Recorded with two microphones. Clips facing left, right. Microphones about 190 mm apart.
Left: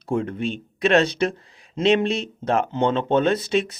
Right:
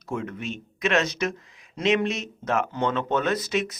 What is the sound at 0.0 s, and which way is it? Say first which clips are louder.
Speech: left 7 dB; 30° left (ahead or behind).